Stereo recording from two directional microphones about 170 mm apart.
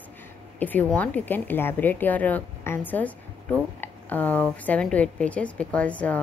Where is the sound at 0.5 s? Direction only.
10° left (ahead or behind).